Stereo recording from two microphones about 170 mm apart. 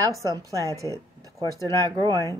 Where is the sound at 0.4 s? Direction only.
20° right (ahead or behind).